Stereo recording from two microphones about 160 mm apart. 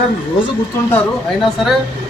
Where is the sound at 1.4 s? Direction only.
Centre (ahead or behind).